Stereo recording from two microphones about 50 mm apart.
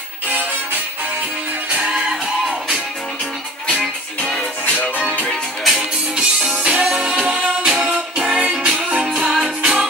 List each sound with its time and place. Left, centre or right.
1.7 s music: centre
5.6 s music: centre